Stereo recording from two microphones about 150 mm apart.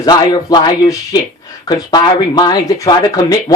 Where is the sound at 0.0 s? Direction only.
25° left (ahead or behind).